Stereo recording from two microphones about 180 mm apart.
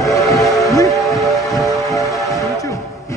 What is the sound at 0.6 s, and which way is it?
Steam whistle, 20° left (ahead or behind).